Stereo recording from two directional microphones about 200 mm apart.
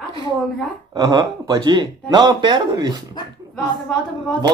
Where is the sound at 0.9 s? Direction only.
20° right (ahead or behind).